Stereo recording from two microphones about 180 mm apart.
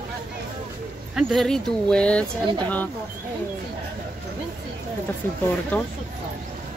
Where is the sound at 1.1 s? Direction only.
Centre (ahead or behind).